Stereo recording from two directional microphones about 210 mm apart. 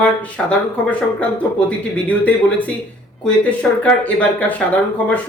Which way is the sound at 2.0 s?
5° left (ahead or behind).